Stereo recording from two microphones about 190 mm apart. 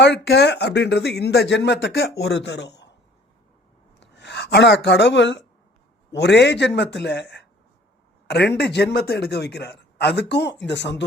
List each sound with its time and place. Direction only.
0.0 s speech: 60° left (ahead or behind)
4.0 s speech: 65° left (ahead or behind)